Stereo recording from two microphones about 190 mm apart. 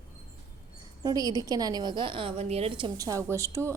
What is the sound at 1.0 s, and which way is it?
A woman's voice, 20° right (ahead or behind).